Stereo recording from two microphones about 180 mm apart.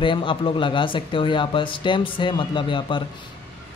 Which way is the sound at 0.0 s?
30° left (ahead or behind).